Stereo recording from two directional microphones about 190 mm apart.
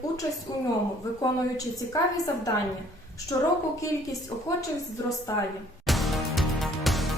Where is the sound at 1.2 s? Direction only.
20° left (ahead or behind).